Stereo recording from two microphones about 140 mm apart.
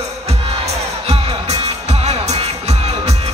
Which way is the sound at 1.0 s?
45° right (ahead or behind).